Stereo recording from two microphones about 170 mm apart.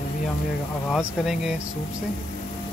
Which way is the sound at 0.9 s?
5° right (ahead or behind).